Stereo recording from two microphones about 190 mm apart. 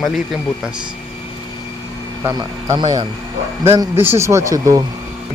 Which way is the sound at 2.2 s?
15° right (ahead or behind).